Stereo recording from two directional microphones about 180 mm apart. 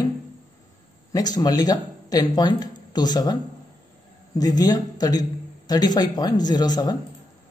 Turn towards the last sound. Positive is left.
turn(degrees=20)  # may be behind; listen again after turning